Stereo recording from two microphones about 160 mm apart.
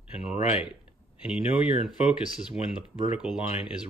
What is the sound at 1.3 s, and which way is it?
Speech, 5° right (ahead or behind).